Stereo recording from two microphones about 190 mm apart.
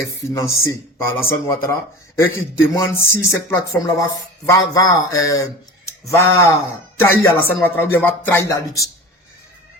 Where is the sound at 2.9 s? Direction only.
15° left (ahead or behind).